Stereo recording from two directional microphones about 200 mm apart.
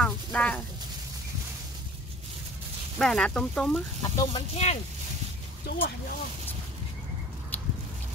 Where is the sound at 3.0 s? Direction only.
5° left (ahead or behind).